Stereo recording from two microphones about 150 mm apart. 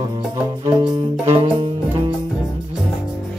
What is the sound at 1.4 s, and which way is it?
Music, 35° right (ahead or behind).